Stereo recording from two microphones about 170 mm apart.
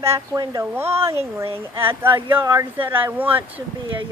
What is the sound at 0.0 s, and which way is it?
Speech, 20° right (ahead or behind).